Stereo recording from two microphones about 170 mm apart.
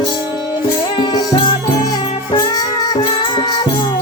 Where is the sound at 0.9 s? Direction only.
25° left (ahead or behind).